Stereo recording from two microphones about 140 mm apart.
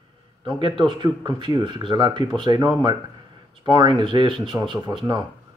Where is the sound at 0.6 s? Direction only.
35° right (ahead or behind).